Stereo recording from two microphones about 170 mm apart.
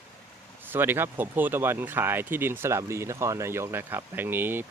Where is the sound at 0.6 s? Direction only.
10° right (ahead or behind).